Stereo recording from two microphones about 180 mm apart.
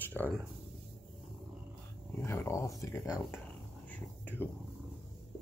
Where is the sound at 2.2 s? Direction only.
15° left (ahead or behind).